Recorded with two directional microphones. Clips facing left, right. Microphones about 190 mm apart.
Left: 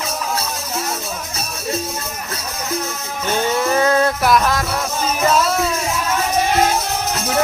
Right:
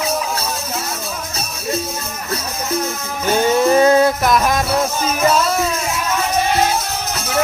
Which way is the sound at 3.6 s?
20° right (ahead or behind).